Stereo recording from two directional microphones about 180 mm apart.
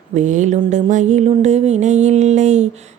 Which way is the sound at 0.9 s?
40° right (ahead or behind).